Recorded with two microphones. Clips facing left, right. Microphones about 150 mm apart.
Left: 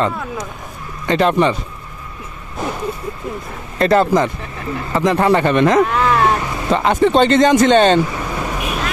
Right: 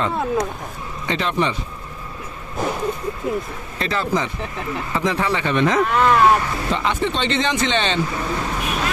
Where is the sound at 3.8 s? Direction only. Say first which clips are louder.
Left 9 dB; 50° left (ahead or behind).